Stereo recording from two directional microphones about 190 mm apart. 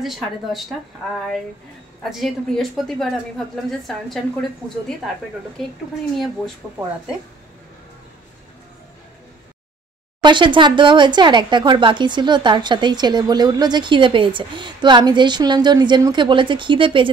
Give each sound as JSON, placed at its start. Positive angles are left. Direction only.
{"t": 0.0, "sound": "a woman's voice", "side_deg": 0}
{"t": 2.0, "sound": "a woman's voice", "side_deg": 0}
{"t": 6.1, "sound": "a woman's voice", "side_deg": 0}
{"t": 10.2, "sound": "speech", "side_deg": -25}